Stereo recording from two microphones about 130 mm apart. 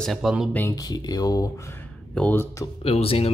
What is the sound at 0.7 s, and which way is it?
Speech, 30° left (ahead or behind).